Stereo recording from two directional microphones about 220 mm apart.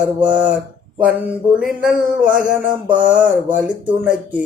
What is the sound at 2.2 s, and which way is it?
Mantra, 35° right (ahead or behind).